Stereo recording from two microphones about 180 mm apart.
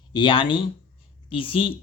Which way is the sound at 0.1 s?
25° left (ahead or behind).